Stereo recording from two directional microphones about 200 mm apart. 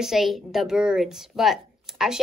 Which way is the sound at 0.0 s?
Centre (ahead or behind).